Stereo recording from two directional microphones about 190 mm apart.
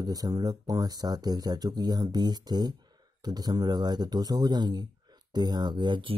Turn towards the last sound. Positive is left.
turn(degrees=-25)  # may be behind; listen again after turning